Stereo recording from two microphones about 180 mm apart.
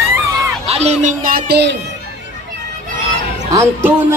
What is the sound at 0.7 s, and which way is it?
Speech, 35° right (ahead or behind).